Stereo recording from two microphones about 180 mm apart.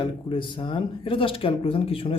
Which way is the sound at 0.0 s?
30° left (ahead or behind).